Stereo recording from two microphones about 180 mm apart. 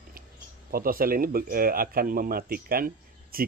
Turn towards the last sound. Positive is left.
turn(degrees=-55)  # may be behind; listen again after turning